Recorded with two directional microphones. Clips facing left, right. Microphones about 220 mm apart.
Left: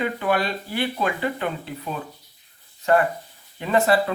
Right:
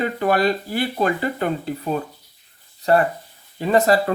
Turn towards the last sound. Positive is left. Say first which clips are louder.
# right 3 dB
turn(degrees=-40)  # may be behind; listen again after turning